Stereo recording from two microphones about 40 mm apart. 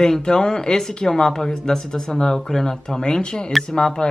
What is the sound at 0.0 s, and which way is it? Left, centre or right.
Speech, centre.